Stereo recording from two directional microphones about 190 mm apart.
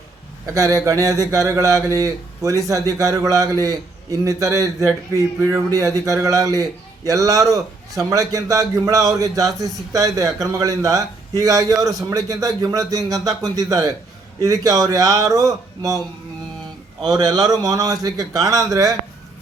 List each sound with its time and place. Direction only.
0.5 s a man's voice: 15° right (ahead or behind)
17.0 s a man's voice: 20° right (ahead or behind)